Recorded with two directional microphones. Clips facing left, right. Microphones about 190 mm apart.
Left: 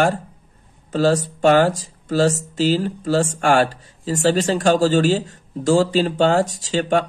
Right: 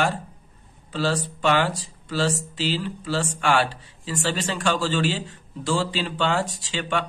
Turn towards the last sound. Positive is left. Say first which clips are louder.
# left 8 dB
turn(degrees=45)  # may be behind; listen again after turning